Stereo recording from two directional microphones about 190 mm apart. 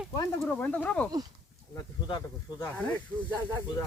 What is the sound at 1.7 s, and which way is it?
Insect, 20° left (ahead or behind).